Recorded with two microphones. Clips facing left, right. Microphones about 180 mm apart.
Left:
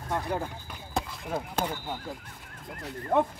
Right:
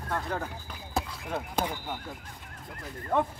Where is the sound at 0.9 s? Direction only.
Centre (ahead or behind).